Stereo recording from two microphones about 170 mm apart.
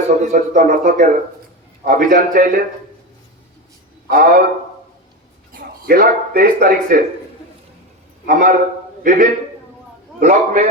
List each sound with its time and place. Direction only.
0.2 s speech: 45° right (ahead or behind)
4.1 s speech: 55° right (ahead or behind)
5.5 s speech: 60° right (ahead or behind)
8.3 s speech: 50° right (ahead or behind)